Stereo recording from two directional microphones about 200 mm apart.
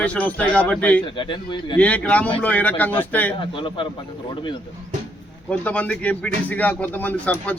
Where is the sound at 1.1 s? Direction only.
25° left (ahead or behind).